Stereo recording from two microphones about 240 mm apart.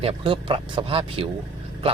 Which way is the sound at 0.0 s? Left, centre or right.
Right.